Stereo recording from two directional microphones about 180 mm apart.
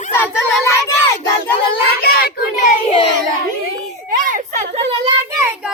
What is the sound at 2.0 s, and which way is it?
Child singing, 60° left (ahead or behind).